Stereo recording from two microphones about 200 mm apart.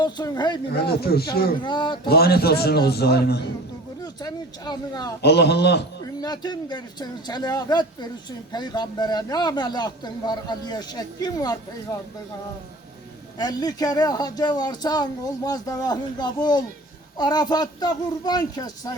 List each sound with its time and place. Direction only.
0.0 s speech: 20° left (ahead or behind)
0.7 s a man's voice: 50° left (ahead or behind)
1.6 s speech: 25° left (ahead or behind)
2.0 s a man's voice: 50° left (ahead or behind)
4.0 s speech: 20° left (ahead or behind)
5.2 s a man's voice: 55° left (ahead or behind)
6.2 s speech: 20° left (ahead or behind)
13.4 s speech: 20° left (ahead or behind)